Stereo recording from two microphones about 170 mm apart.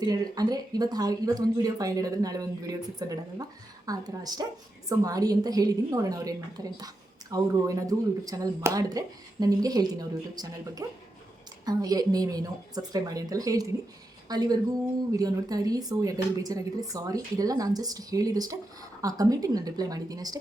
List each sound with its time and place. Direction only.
0.0 s speech: 25° right (ahead or behind)